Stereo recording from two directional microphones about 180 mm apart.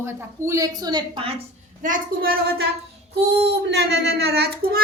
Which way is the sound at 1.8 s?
50° right (ahead or behind).